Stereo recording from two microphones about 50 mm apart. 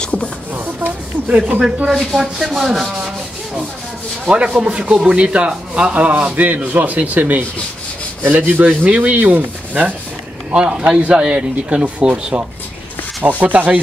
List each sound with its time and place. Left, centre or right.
0.0 s a sound: left
0.6 s a sound: right
1.5 s speech: right
1.9 s rub: centre
4.6 s speech: right
10.5 s speech: centre; by 13.7 s right